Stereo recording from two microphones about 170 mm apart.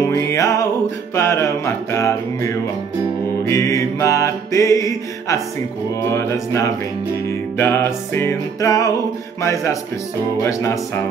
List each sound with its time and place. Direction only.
0.1 s music: 15° left (ahead or behind)